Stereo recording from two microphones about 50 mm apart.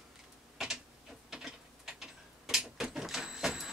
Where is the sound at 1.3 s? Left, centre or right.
Centre.